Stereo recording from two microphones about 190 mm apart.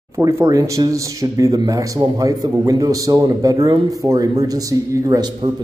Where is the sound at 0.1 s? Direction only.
15° right (ahead or behind).